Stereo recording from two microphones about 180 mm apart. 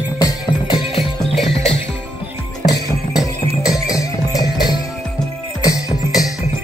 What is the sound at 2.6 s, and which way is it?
Music, 20° left (ahead or behind).